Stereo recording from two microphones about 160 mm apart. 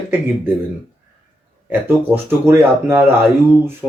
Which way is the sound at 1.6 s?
15° right (ahead or behind).